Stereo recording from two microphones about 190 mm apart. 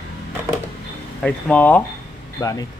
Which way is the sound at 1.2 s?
5° left (ahead or behind).